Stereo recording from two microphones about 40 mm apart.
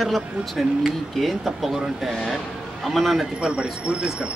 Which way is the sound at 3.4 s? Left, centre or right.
Right.